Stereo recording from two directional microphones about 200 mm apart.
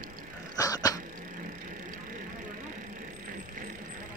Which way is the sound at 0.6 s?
15° left (ahead or behind).